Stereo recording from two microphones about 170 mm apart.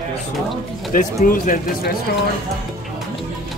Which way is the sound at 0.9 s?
55° left (ahead or behind).